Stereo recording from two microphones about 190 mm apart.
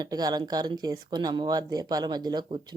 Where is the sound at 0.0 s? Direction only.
20° right (ahead or behind).